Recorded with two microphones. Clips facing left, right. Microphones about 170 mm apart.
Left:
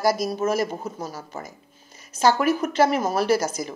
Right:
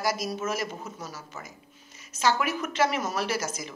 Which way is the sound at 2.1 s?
35° left (ahead or behind).